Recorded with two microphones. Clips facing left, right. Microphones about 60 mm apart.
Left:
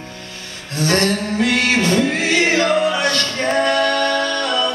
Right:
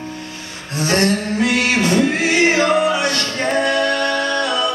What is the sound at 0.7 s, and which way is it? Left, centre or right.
Music, right.